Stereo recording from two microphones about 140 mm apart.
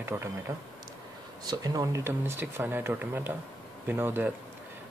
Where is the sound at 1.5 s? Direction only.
25° right (ahead or behind).